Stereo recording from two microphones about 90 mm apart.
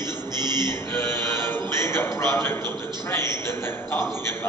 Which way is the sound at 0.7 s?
25° left (ahead or behind).